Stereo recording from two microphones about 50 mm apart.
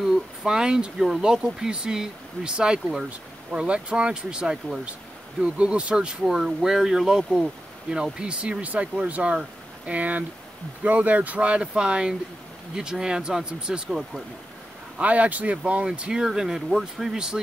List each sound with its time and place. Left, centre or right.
0.0 s speech: centre
15.0 s speech: right; by 17.2 s centre